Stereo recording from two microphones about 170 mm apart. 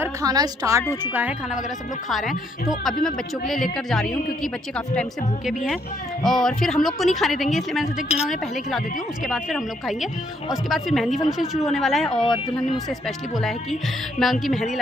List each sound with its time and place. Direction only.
0.0 s a woman's voice: 20° right (ahead or behind)
1.0 s a woman's voice: 10° right (ahead or behind)
2.0 s a woman's voice: centre (ahead or behind)
6.2 s a woman's voice: centre (ahead or behind)
14.2 s a woman's voice: centre (ahead or behind)